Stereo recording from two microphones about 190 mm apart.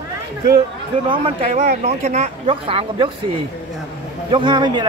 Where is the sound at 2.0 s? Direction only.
35° right (ahead or behind).